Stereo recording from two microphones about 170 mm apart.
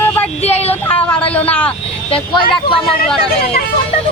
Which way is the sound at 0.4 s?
40° left (ahead or behind).